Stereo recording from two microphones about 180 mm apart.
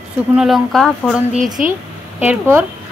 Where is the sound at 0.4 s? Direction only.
Centre (ahead or behind).